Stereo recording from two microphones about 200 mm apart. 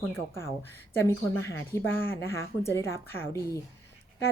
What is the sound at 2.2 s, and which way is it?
Speech, 15° left (ahead or behind).